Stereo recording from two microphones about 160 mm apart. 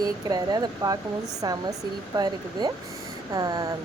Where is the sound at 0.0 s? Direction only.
25° right (ahead or behind).